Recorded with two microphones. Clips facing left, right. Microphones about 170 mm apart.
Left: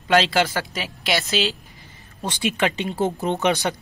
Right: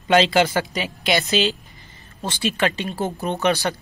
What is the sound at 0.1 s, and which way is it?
Speech, centre (ahead or behind).